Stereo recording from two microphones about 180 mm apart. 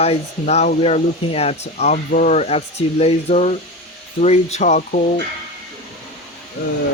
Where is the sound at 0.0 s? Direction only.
35° left (ahead or behind).